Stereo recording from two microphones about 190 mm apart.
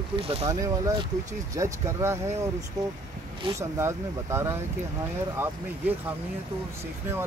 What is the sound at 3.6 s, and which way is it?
Speech, 15° right (ahead or behind).